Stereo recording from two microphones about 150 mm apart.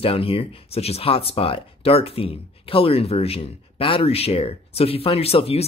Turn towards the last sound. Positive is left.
turn(degrees=40)  # may be behind; listen again after turning